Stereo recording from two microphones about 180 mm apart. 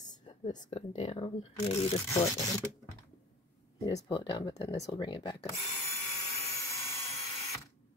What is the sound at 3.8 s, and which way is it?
Speech, 25° left (ahead or behind).